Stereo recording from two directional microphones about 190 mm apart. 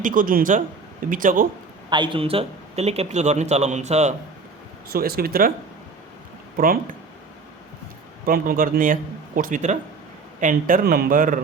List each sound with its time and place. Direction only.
0.0 s speech: 45° right (ahead or behind)
1.9 s a man's voice: 25° right (ahead or behind)
4.9 s speech: 55° right (ahead or behind)
8.2 s speech: 50° right (ahead or behind)